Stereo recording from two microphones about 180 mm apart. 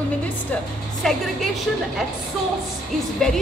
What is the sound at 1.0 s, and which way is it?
Speech, centre (ahead or behind).